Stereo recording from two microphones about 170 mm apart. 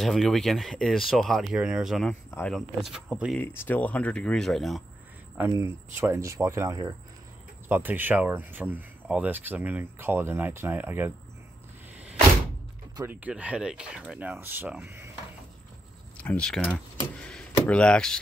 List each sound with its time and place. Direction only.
0.0 s speech: centre (ahead or behind)
3.3 s speech: 10° left (ahead or behind); by 11.1 s 10° right (ahead or behind)
12.9 s speech: 10° right (ahead or behind)
16.2 s speech: 5° left (ahead or behind)